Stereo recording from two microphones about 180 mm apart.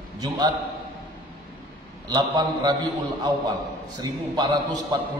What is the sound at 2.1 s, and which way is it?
A man's voice, 25° right (ahead or behind).